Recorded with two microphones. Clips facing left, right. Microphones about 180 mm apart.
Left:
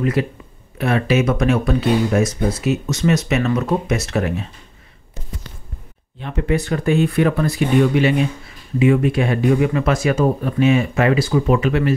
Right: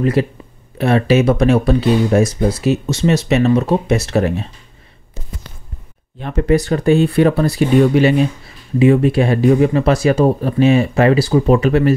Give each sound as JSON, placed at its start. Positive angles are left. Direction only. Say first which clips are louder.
{"t": 0.0, "sound": "speech", "louder": "right 4 dB", "side_deg": -35}
{"t": 6.1, "sound": "speech", "louder": "right 5 dB", "side_deg": -45}